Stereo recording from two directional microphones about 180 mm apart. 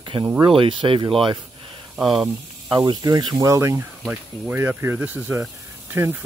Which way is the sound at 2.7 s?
25° right (ahead or behind).